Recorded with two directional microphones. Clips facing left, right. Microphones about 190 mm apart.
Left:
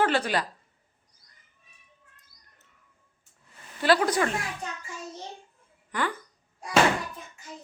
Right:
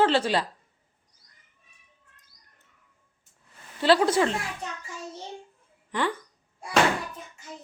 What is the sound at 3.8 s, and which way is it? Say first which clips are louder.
Speech: right 2 dB; 25° right (ahead or behind).